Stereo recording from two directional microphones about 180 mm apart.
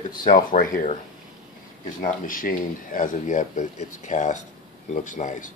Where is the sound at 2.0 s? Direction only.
50° left (ahead or behind).